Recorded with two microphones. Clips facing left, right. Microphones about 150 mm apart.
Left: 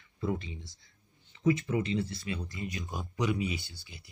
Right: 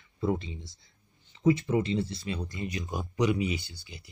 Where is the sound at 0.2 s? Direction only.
25° right (ahead or behind).